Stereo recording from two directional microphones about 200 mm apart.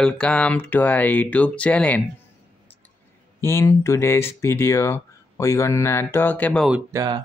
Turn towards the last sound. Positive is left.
turn(degrees=-20)  # may be behind; listen again after turning